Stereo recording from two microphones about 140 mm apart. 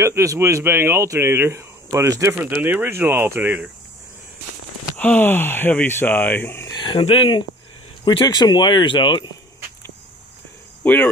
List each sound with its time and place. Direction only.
0.0 s speech: 20° right (ahead or behind)
4.9 s speech: 10° left (ahead or behind)
6.8 s speech: 35° left (ahead or behind)
10.8 s cricket: 15° left (ahead or behind)